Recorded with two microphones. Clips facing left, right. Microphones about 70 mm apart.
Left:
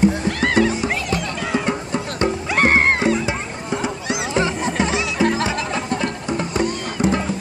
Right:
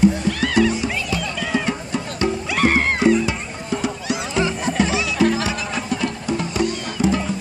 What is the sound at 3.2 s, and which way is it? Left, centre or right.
Music, left.